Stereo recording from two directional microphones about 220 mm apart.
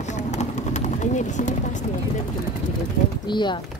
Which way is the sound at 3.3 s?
20° left (ahead or behind).